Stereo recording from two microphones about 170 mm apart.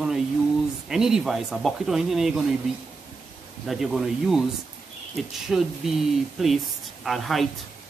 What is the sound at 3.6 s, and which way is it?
Speech, centre (ahead or behind).